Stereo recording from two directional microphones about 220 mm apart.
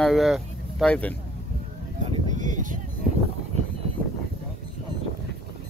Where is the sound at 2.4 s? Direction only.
35° right (ahead or behind).